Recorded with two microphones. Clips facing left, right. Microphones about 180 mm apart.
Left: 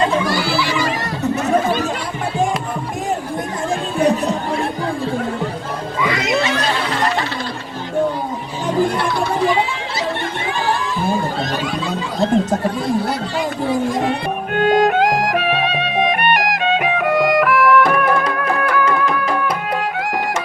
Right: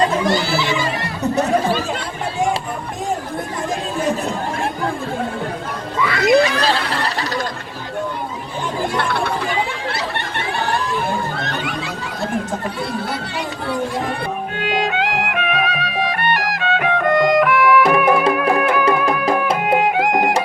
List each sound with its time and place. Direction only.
0.3 s a sound: 20° right (ahead or behind)
1.4 s chatter: 35° right (ahead or behind)
6.0 s music: 20° left (ahead or behind)
9.0 s chatter: 60° right (ahead or behind)
11.4 s a sound: 65° right (ahead or behind)
13.3 s chatter: 65° right (ahead or behind)
14.5 s music: 50° left (ahead or behind); by 16.9 s 20° left (ahead or behind)
17.0 s music: 5° left (ahead or behind)
18.2 s music: 20° right (ahead or behind)